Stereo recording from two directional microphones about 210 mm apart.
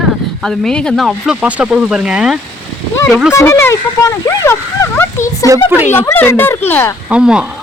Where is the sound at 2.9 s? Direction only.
10° left (ahead or behind).